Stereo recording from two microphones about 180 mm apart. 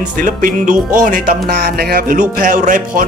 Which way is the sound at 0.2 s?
50° right (ahead or behind).